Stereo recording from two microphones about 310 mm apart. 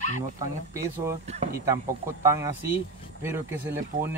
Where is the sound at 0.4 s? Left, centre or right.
Centre.